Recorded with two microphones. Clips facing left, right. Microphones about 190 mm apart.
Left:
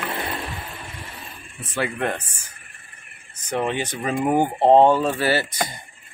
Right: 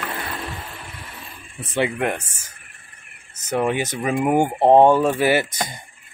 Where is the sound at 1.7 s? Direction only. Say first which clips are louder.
Right 3 dB; 15° right (ahead or behind).